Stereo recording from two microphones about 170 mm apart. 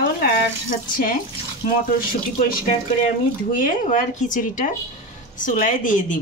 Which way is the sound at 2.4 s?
55° left (ahead or behind).